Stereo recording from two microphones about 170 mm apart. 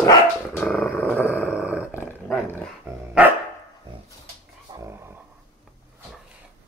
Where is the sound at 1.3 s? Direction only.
10° right (ahead or behind).